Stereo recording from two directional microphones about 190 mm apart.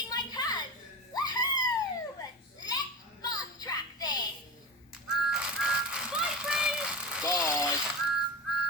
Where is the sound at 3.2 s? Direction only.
20° left (ahead or behind).